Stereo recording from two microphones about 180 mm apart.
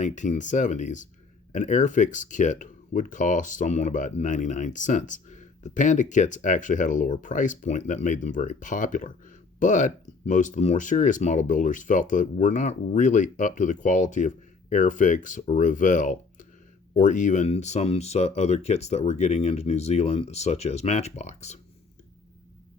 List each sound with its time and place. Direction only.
0.0 s speech: 45° left (ahead or behind)